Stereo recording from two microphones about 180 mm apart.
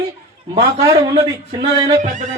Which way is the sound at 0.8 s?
20° right (ahead or behind).